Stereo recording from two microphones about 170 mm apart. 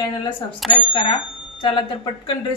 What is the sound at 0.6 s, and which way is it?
Speech, centre (ahead or behind).